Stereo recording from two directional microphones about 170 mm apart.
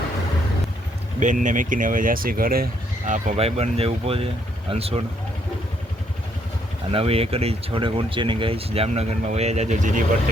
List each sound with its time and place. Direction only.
1.2 s speech: 50° right (ahead or behind)
3.1 s speech: 40° right (ahead or behind)
6.9 s speech: 35° right (ahead or behind)